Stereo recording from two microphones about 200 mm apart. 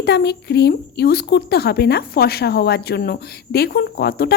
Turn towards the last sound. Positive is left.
turn(degrees=55)  # may be behind; listen again after turning